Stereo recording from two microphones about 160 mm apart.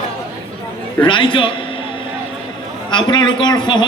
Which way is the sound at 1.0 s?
30° left (ahead or behind).